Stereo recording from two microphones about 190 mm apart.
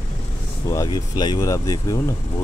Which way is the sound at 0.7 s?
20° left (ahead or behind).